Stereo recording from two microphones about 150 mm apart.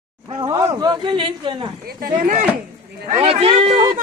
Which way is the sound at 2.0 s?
60° right (ahead or behind).